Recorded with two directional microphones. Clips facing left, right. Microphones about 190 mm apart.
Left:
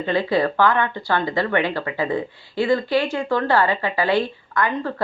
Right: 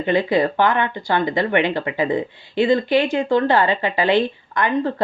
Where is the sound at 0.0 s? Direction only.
20° right (ahead or behind).